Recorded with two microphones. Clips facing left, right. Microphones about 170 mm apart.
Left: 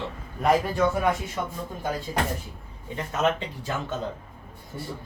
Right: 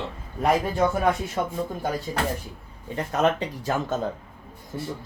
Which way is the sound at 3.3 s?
40° right (ahead or behind).